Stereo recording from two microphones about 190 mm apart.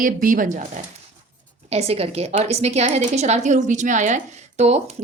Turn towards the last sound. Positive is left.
turn(degrees=-35)  # may be behind; listen again after turning